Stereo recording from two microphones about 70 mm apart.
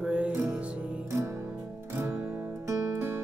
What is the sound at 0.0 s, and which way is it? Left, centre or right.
Music, centre.